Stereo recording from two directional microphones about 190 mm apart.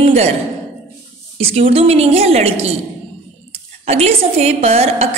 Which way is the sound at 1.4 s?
30° right (ahead or behind).